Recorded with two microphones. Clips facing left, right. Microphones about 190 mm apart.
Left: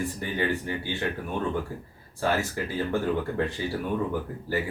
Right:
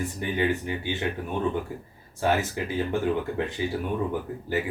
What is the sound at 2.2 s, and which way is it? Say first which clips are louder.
Speech: right 2 dB; 20° right (ahead or behind).